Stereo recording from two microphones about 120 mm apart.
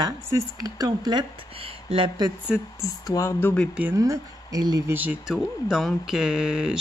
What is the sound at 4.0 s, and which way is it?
Speech, 30° right (ahead or behind).